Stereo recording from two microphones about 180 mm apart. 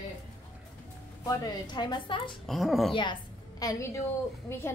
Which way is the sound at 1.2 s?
25° left (ahead or behind).